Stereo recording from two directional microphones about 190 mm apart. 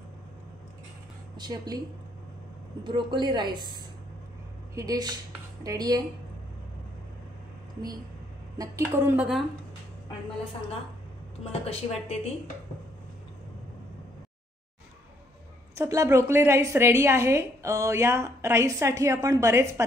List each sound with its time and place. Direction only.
1.3 s a woman's voice: 20° right (ahead or behind)
2.8 s a woman's voice: 25° right (ahead or behind)
4.7 s a woman's voice: 20° right (ahead or behind)
8.5 s a woman's voice: 10° right (ahead or behind)
11.6 s a woman's voice: 30° left (ahead or behind)
15.7 s a woman's voice: 15° right (ahead or behind)